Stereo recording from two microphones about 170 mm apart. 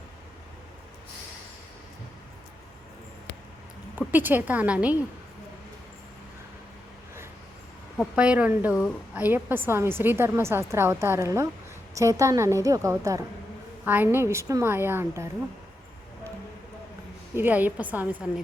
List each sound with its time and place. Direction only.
3.9 s a woman's voice: 10° right (ahead or behind)
7.9 s a woman's voice: 5° right (ahead or behind)
17.3 s a woman's voice: 10° right (ahead or behind)